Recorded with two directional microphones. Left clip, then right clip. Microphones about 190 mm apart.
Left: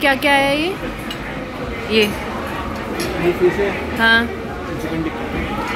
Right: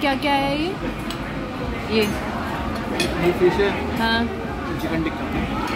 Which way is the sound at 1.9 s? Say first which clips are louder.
Left 5 dB; centre (ahead or behind).